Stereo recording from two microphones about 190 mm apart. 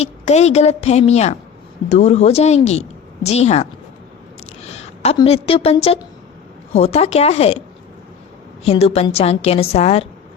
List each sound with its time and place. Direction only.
0.0 s a woman's voice: 35° left (ahead or behind)
4.7 s a sound: 35° left (ahead or behind)
5.1 s a woman's voice: 30° left (ahead or behind)
8.6 s a woman's voice: 35° left (ahead or behind)